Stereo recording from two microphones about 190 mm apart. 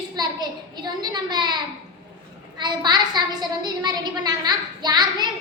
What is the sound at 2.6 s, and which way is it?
A woman's voice, 20° right (ahead or behind).